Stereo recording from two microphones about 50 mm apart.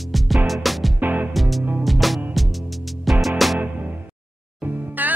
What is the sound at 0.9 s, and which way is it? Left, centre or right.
Music, right.